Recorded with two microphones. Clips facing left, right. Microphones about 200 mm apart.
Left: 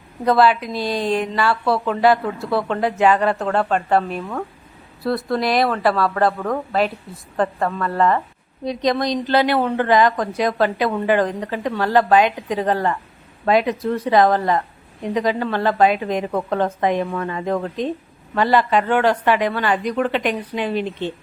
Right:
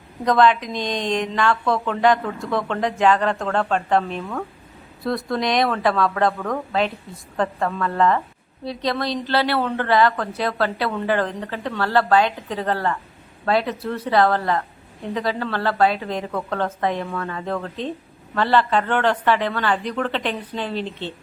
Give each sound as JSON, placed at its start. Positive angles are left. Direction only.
{"t": 0.3, "sound": "a woman's voice", "side_deg": 5}
{"t": 8.6, "sound": "a woman's voice", "side_deg": 15}